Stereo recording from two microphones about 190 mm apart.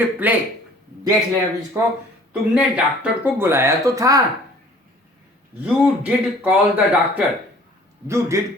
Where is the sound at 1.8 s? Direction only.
15° right (ahead or behind).